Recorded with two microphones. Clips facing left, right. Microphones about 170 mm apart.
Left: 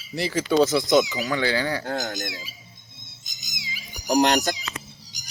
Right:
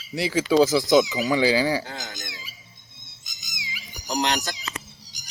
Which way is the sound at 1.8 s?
55° left (ahead or behind).